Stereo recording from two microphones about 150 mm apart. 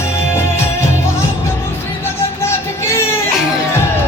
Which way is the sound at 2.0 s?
15° left (ahead or behind).